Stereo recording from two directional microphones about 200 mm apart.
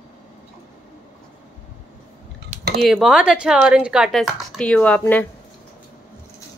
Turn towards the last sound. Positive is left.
turn(degrees=10)  # may be behind; listen again after turning